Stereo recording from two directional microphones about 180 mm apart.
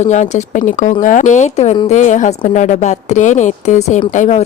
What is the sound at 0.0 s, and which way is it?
A woman's voice, 40° left (ahead or behind).